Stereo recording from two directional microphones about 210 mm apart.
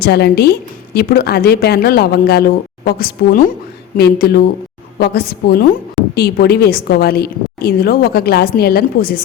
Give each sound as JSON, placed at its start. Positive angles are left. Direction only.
{"t": 0.0, "sound": "a woman's voice", "side_deg": 50}